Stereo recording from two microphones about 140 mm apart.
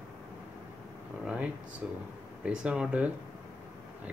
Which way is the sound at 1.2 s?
10° right (ahead or behind).